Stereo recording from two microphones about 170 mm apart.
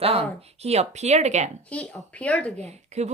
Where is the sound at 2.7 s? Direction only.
40° right (ahead or behind).